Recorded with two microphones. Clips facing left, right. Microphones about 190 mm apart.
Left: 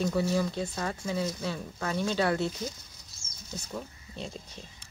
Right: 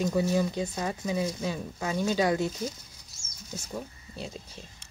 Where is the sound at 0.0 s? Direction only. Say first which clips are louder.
Right 2 dB; 20° right (ahead or behind).